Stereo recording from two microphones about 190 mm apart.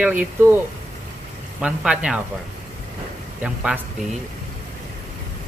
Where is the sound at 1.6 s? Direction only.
5° right (ahead or behind).